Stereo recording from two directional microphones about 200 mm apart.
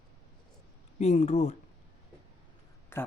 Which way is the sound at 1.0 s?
35° left (ahead or behind).